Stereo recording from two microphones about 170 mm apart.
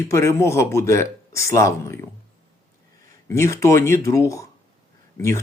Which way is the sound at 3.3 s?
15° left (ahead or behind).